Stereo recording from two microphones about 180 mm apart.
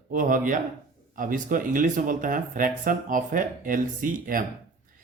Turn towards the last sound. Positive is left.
turn(degrees=-50)  # may be behind; listen again after turning